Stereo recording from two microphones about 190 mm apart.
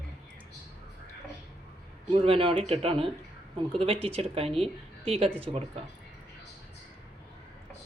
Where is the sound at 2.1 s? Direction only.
30° right (ahead or behind).